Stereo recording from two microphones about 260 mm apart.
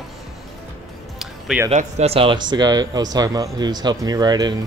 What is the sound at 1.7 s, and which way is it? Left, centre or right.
Speech, right.